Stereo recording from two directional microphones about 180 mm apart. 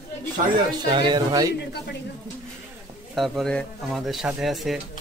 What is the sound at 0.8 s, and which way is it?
Speech, 25° right (ahead or behind).